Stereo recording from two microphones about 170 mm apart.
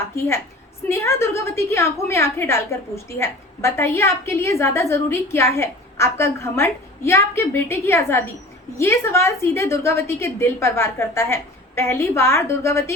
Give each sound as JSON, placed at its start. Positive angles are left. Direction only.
{"t": 0.0, "sound": "a woman's voice", "side_deg": 15}